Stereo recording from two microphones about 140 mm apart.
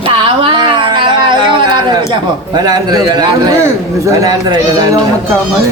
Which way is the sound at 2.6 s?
30° right (ahead or behind).